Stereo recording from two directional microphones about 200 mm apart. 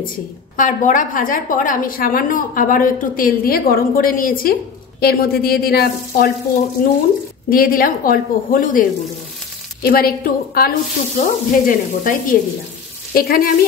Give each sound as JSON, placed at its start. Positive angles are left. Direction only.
{"t": 0.6, "sound": "a woman's voice", "side_deg": 40}
{"t": 9.8, "sound": "a woman's voice", "side_deg": 50}